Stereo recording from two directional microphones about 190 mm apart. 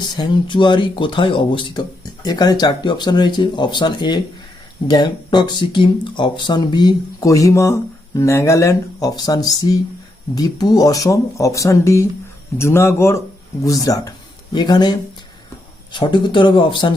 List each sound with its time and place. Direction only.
0.2 s speech: 25° left (ahead or behind)